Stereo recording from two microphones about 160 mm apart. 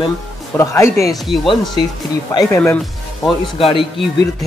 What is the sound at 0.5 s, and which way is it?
Speech, 15° left (ahead or behind).